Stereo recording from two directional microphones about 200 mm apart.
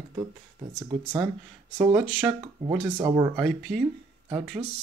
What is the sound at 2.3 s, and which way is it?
Speech, 20° right (ahead or behind).